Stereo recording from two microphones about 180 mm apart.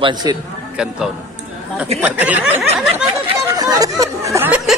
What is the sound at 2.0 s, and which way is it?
Speech, 10° right (ahead or behind).